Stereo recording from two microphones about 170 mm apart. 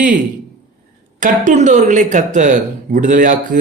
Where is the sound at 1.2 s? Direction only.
50° right (ahead or behind).